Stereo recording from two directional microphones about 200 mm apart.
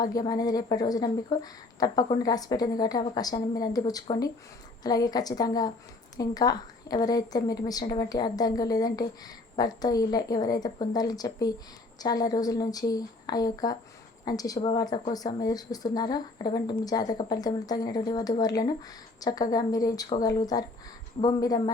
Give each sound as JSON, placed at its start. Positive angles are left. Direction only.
{"t": 0.0, "sound": "a woman's voice", "side_deg": 20}